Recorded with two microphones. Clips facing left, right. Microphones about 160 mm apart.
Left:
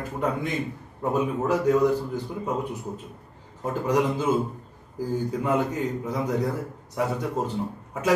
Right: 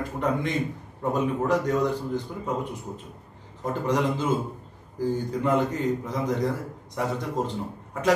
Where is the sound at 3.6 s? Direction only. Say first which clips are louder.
Left 1 dB; 10° left (ahead or behind).